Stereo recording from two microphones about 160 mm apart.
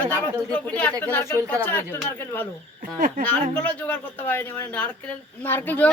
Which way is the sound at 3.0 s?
60° right (ahead or behind).